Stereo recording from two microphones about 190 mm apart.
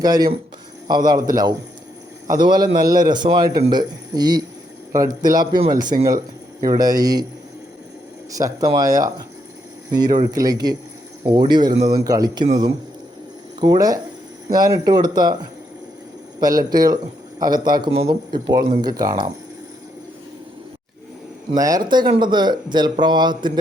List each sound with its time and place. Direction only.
0.0 s speech: 20° right (ahead or behind)
2.3 s speech: 20° right (ahead or behind)
8.4 s speech: 15° right (ahead or behind)
13.6 s speech: 20° right (ahead or behind)
16.4 s speech: 20° right (ahead or behind)
21.5 s speech: 20° right (ahead or behind)